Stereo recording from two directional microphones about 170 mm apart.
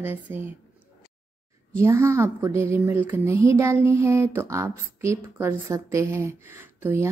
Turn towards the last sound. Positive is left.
turn(degrees=-10)  # may be behind; listen again after turning